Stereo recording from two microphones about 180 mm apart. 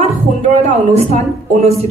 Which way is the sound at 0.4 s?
35° right (ahead or behind).